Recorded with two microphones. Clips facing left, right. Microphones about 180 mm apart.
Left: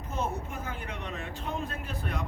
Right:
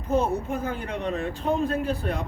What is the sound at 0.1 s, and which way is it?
Speech, 35° right (ahead or behind).